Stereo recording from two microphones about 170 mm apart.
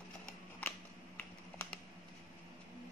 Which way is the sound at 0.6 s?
10° left (ahead or behind).